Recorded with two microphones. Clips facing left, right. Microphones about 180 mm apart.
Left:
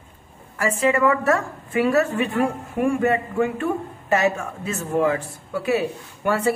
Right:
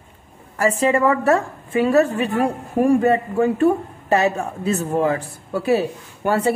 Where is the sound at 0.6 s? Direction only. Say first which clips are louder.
Right 2 dB; 35° right (ahead or behind).